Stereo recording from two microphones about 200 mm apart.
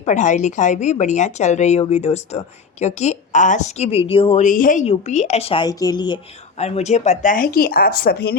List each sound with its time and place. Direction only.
0.0 s speech: 35° left (ahead or behind); by 6.1 s 20° left (ahead or behind)
6.6 s speech: 35° left (ahead or behind); by 8.4 s 50° left (ahead or behind)